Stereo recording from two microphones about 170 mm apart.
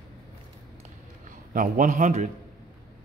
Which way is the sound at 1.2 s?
55° right (ahead or behind).